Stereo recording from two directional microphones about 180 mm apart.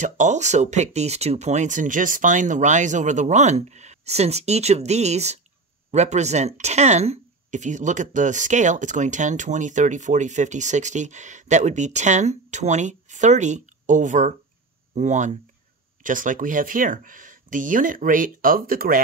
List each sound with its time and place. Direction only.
0.0 s speech: 40° right (ahead or behind)